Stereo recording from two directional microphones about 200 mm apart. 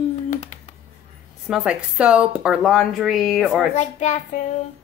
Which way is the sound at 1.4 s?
5° right (ahead or behind).